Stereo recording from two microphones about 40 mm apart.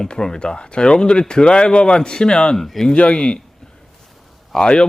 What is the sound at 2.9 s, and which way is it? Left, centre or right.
Speech, left.